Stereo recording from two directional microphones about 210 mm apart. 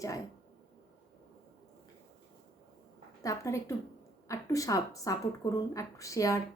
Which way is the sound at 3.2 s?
15° left (ahead or behind).